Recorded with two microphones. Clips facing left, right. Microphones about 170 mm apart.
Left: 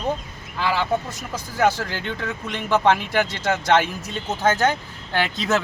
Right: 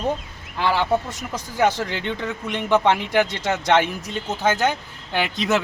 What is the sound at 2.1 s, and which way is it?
Speech, 15° right (ahead or behind).